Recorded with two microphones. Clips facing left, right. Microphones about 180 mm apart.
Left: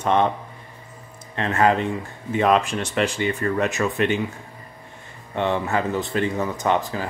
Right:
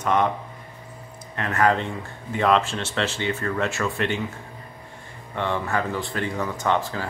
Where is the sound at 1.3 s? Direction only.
25° left (ahead or behind).